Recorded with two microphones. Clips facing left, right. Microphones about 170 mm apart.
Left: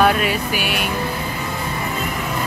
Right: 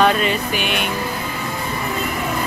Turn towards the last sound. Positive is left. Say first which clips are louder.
# even
turn(degrees=5)  # may be behind; listen again after turning